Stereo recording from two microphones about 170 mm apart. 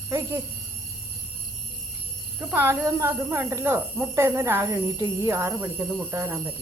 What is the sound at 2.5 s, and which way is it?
Speech, 10° right (ahead or behind).